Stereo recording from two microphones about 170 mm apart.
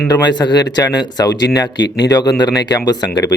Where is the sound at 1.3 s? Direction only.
90° left.